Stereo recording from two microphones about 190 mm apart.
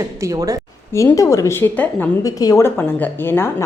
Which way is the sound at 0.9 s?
15° left (ahead or behind).